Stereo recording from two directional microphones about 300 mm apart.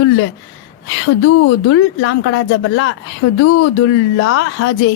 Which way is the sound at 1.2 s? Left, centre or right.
Left.